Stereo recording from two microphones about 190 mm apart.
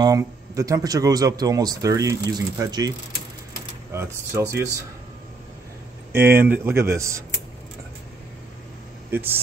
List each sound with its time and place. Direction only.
0.0 s speech: 15° right (ahead or behind)
3.9 s speech: 15° right (ahead or behind)
6.1 s speech: 10° right (ahead or behind)
9.1 s speech: 10° right (ahead or behind)